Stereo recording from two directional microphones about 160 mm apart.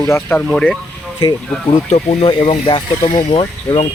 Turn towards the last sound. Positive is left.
turn(degrees=35)  # may be behind; listen again after turning